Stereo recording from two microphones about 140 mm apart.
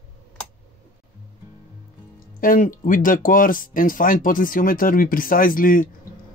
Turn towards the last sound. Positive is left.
turn(degrees=85)